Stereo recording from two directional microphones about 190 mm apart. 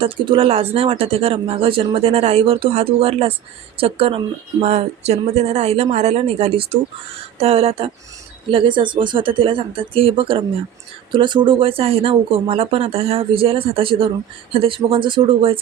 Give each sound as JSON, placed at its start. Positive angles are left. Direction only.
{"t": 0.0, "sound": "speech", "side_deg": -30}